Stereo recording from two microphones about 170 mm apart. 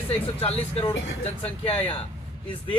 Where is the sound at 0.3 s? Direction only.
35° left (ahead or behind).